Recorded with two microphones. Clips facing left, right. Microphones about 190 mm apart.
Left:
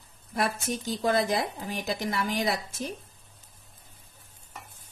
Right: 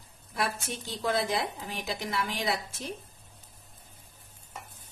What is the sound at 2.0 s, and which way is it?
Speech, 45° left (ahead or behind).